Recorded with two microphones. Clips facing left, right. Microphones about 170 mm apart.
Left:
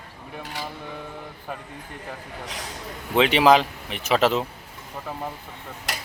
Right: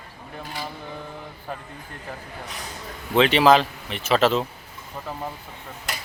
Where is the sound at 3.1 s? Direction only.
15° left (ahead or behind).